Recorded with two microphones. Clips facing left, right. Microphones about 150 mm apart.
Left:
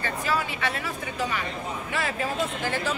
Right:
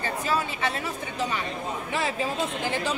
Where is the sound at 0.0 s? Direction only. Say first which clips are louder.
Right 1 dB; 25° right (ahead or behind).